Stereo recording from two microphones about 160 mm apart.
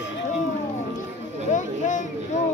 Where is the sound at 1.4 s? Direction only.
50° left (ahead or behind).